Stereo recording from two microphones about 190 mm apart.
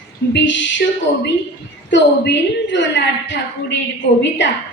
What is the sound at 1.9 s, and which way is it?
A woman's voice, 70° left (ahead or behind).